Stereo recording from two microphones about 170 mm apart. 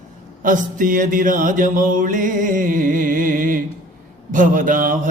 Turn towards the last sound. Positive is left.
turn(degrees=-50)  # may be behind; listen again after turning